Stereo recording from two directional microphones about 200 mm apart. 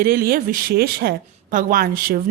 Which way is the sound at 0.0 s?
50° right (ahead or behind).